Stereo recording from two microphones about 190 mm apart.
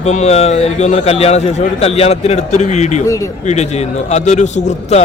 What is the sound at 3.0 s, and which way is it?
Speech, 15° left (ahead or behind).